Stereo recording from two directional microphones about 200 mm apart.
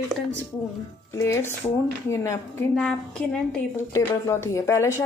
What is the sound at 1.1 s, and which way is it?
A woman's voice, 15° left (ahead or behind).